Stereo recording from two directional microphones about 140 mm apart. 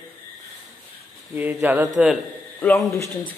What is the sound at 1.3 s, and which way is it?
Speech, 15° right (ahead or behind).